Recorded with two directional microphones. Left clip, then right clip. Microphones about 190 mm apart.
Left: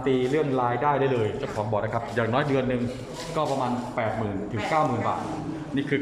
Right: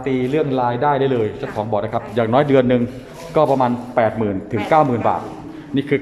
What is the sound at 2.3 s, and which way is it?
A man's voice, 35° right (ahead or behind).